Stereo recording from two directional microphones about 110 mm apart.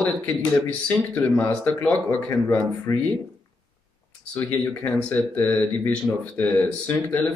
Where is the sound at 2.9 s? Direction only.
25° left (ahead or behind).